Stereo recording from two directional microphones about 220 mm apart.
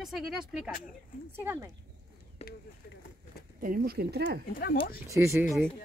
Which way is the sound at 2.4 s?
30° left (ahead or behind).